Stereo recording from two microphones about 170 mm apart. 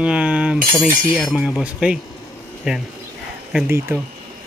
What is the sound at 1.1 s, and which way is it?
Speech, 5° left (ahead or behind).